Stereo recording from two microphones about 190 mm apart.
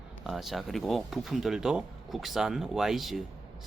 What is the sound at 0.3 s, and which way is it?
Speech, centre (ahead or behind).